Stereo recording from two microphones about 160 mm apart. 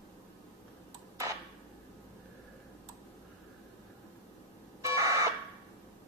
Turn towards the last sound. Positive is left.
turn(degrees=-20)  # may be behind; listen again after turning